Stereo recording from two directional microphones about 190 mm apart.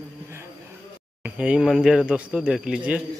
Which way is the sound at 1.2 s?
5° right (ahead or behind).